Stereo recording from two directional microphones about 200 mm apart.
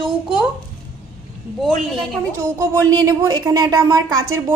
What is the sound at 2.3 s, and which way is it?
A woman's voice, 15° right (ahead or behind).